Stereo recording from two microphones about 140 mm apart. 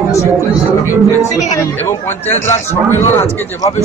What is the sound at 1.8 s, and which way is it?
Speech, 15° left (ahead or behind).